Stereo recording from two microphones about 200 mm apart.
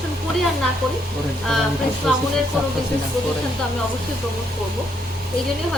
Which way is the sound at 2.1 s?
Centre (ahead or behind).